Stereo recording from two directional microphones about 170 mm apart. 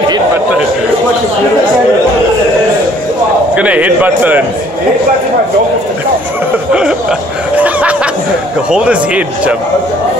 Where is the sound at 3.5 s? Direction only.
10° right (ahead or behind).